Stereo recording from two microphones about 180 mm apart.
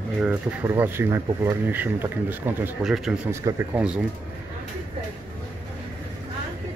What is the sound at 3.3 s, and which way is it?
Speech, 15° right (ahead or behind).